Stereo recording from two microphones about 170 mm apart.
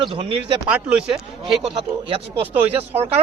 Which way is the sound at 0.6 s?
5° right (ahead or behind).